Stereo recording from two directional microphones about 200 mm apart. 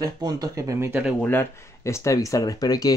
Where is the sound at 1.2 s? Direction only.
10° left (ahead or behind).